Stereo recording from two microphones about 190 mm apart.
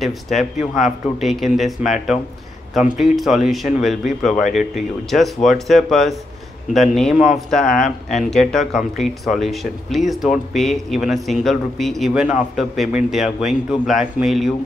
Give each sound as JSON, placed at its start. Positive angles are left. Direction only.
{"t": 0.0, "sound": "speech", "side_deg": 0}
{"t": 7.6, "sound": "speech", "side_deg": 45}
{"t": 8.1, "sound": "speech", "side_deg": 0}